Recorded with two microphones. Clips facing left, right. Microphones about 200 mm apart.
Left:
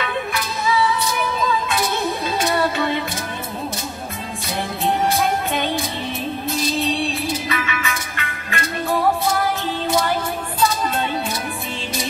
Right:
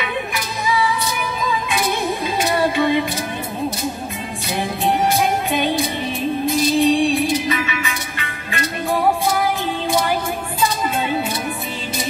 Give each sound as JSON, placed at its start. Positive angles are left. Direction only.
{"t": 0.0, "sound": "music", "side_deg": -15}
{"t": 2.6, "sound": "music", "side_deg": -15}
{"t": 4.6, "sound": "music", "side_deg": -15}